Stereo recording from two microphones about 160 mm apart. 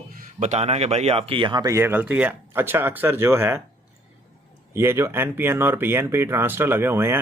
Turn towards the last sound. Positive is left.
turn(degrees=-15)  # may be behind; listen again after turning